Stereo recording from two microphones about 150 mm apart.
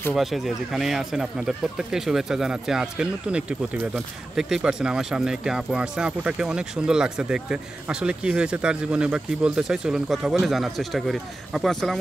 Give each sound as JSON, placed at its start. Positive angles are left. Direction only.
{"t": 0.1, "sound": "speech", "side_deg": 0}